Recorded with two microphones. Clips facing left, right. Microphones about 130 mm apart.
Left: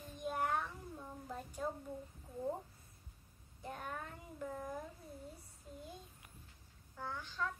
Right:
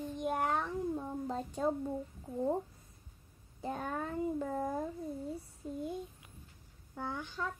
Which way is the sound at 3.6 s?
90° right.